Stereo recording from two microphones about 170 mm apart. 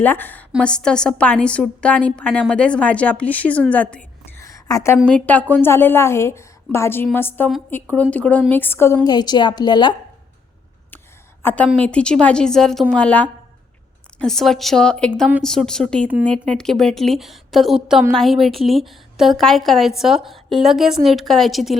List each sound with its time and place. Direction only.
0.0 s a woman's voice: 10° left (ahead or behind)
4.4 s a sound: 20° left (ahead or behind)
5.0 s a woman's voice: 5° left (ahead or behind); by 9.9 s 25° left (ahead or behind)
11.4 s a woman's voice: 10° left (ahead or behind)